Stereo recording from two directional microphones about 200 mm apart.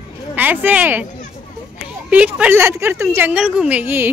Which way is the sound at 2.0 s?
5° right (ahead or behind).